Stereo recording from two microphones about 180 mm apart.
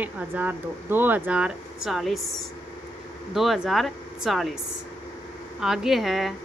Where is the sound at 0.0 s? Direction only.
10° right (ahead or behind).